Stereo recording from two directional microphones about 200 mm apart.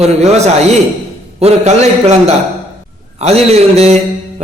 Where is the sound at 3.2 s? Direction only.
30° right (ahead or behind).